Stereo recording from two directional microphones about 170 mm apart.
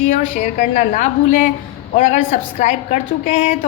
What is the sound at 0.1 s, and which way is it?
A woman's voice, 50° left (ahead or behind).